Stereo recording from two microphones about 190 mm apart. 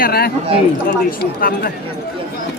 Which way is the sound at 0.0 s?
55° left (ahead or behind).